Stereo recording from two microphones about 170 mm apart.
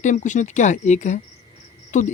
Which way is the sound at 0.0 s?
45° left (ahead or behind).